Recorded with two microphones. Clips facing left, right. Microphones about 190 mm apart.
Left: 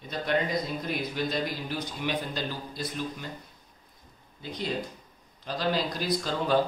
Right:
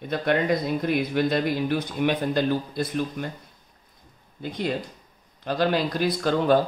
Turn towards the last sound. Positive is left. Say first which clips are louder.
# right 7 dB
turn(degrees=-60)  # may be behind; listen again after turning